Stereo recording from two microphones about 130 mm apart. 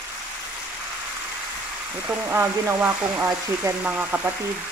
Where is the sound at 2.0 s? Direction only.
15° right (ahead or behind).